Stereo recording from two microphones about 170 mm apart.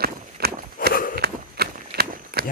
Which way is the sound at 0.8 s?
55° left (ahead or behind).